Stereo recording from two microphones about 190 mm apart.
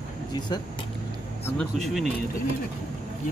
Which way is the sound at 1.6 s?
Centre (ahead or behind).